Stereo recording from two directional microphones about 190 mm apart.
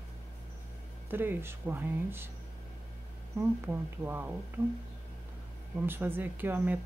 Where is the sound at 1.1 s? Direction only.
10° right (ahead or behind).